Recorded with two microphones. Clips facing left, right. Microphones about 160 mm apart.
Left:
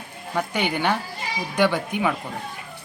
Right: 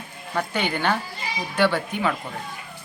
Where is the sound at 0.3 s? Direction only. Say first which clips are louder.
Left 1 dB; 15° left (ahead or behind).